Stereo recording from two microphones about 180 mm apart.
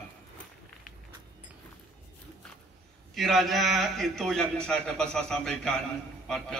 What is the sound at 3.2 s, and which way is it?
A man's voice, centre (ahead or behind).